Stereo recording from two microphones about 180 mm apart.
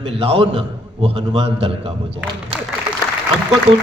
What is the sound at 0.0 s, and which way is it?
A man's voice, 30° right (ahead or behind).